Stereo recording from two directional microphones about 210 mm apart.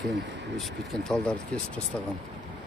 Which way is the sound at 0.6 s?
Centre (ahead or behind).